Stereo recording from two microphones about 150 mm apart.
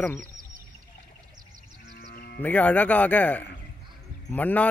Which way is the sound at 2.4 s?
10° left (ahead or behind).